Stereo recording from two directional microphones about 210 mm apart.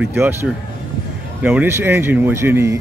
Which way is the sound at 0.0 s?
10° right (ahead or behind).